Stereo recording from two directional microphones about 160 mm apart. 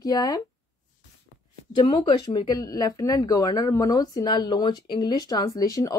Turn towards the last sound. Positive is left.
turn(degrees=20)  # may be behind; listen again after turning